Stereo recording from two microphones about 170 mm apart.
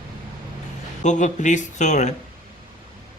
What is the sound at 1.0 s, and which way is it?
Speech, 45° left (ahead or behind).